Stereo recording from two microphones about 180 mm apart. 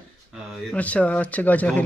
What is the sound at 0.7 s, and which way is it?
Speech, 10° left (ahead or behind).